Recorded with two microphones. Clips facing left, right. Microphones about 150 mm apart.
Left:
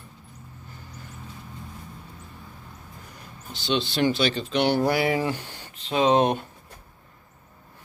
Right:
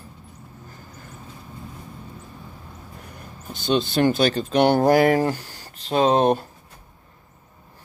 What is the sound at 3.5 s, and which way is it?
Speech, 45° right (ahead or behind).